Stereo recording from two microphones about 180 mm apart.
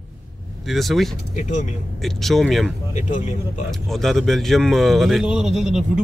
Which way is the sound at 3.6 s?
Centre (ahead or behind).